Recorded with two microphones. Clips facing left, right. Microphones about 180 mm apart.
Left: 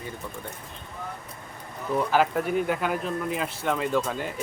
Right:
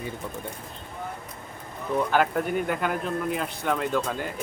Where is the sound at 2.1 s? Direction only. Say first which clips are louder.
Left 1 dB; centre (ahead or behind).